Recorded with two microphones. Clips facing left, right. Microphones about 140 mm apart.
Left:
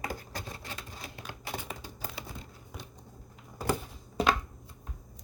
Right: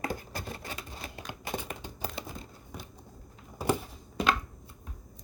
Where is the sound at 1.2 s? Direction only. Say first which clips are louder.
Right 3 dB; 20° right (ahead or behind).